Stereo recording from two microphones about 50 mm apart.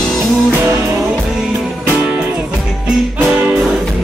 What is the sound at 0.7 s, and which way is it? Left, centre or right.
Music, right.